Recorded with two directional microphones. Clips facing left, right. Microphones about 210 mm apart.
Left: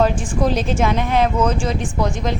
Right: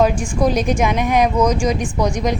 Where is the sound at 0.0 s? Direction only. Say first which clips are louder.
Right 2 dB; 10° right (ahead or behind).